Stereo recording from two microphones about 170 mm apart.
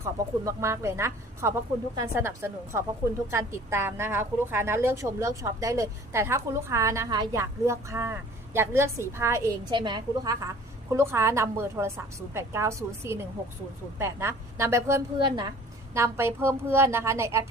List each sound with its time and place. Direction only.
0.0 s a woman's voice: 15° right (ahead or behind)
15.2 s a woman's voice: 25° right (ahead or behind)
16.0 s a woman's voice: 15° right (ahead or behind)